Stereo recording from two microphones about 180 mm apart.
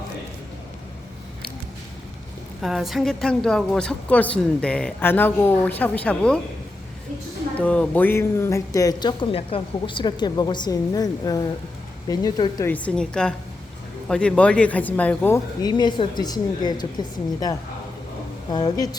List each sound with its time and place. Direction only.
2.6 s a woman's voice: centre (ahead or behind)
7.6 s speech: 5° left (ahead or behind)
12.7 s a woman's voice: 5° left (ahead or behind)
15.6 s speech: 25° left (ahead or behind)
18.5 s speech: 25° left (ahead or behind)